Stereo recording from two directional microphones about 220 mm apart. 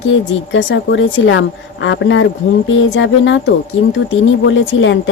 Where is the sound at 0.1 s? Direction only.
55° left (ahead or behind).